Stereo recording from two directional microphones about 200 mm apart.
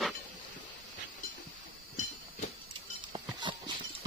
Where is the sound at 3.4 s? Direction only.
25° right (ahead or behind).